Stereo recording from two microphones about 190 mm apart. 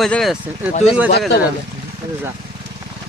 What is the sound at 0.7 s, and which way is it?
Speech, 35° left (ahead or behind).